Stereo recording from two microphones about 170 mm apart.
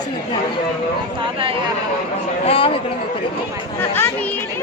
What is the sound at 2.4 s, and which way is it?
Speech, 35° left (ahead or behind).